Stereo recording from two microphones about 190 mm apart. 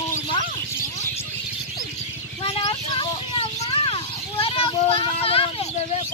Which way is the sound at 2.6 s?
25° left (ahead or behind).